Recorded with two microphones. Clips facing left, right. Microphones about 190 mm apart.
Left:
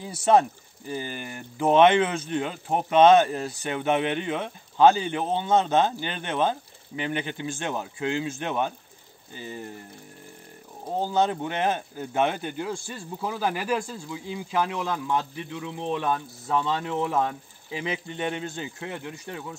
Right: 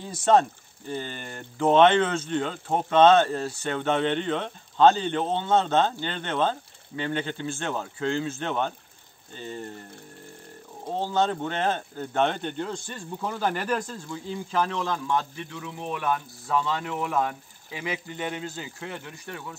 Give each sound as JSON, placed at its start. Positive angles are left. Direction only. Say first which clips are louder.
{"t": 0.0, "sound": "speech", "louder": "even", "side_deg": 10}
{"t": 11.0, "sound": "speech", "louder": "left 1 dB", "side_deg": 10}